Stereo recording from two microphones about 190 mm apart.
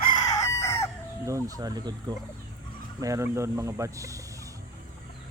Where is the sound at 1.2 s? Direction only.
15° right (ahead or behind).